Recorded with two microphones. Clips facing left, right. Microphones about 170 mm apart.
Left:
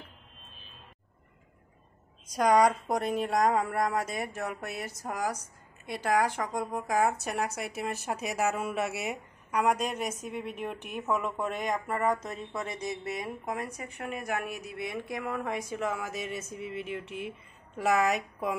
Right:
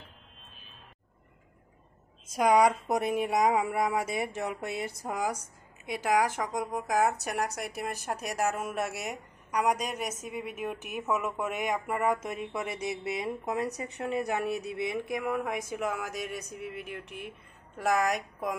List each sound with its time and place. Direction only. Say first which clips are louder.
2.3 s speech: even; 5° right (ahead or behind)
6.3 s a woman's voice: even; 5° right (ahead or behind); by 14.8 s 30° right (ahead or behind)
14.9 s a woman's voice: right 2 dB; 15° right (ahead or behind); by 18.5 s 5° left (ahead or behind)